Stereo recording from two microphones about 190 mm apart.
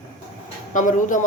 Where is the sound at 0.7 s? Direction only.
45° left (ahead or behind).